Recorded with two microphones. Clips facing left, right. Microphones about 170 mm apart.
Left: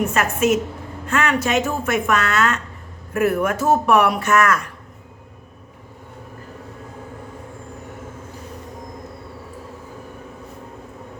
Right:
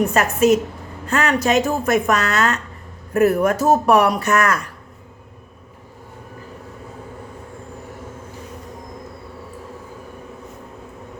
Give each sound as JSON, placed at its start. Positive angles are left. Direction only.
{"t": 0.1, "sound": "speech", "side_deg": -35}